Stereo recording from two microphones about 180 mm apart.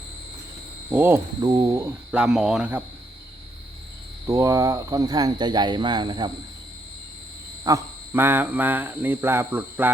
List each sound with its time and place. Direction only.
0.9 s speech: 10° right (ahead or behind)
2.1 s speech: 5° right (ahead or behind)
4.3 s speech: 20° right (ahead or behind)
7.6 s speech: 15° right (ahead or behind)